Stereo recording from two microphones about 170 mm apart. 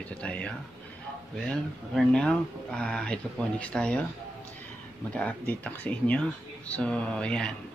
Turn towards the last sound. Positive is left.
turn(degrees=5)  # may be behind; listen again after turning